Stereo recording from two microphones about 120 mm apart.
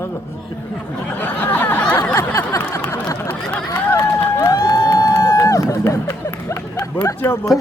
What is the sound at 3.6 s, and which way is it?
Speech, 25° left (ahead or behind).